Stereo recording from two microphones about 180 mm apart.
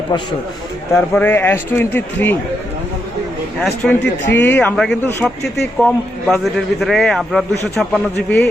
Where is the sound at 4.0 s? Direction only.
70° left (ahead or behind).